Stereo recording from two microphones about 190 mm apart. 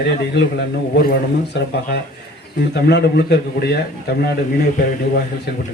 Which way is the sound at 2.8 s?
60° left (ahead or behind).